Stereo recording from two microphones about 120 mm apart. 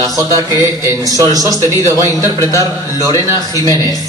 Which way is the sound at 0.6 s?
25° right (ahead or behind).